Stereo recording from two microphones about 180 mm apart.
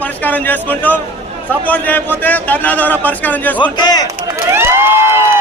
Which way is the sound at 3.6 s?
25° left (ahead or behind).